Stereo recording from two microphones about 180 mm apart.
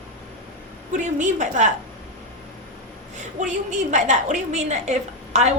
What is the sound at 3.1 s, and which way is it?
A woman's voice, 40° right (ahead or behind).